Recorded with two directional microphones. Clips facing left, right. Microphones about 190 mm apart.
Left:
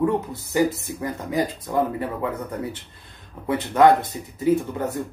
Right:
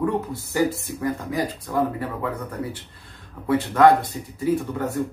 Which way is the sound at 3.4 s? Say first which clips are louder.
Even; 20° left (ahead or behind).